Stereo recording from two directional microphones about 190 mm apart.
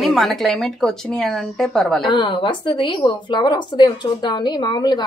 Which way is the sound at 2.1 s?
25° left (ahead or behind).